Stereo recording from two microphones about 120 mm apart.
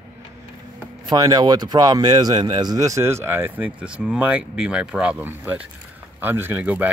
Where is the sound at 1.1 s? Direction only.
35° right (ahead or behind).